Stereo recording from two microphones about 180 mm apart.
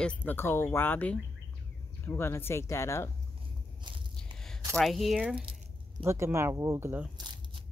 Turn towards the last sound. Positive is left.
turn(degrees=-15)  # may be behind; listen again after turning